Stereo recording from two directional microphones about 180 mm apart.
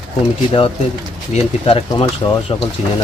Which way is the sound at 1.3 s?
30° left (ahead or behind).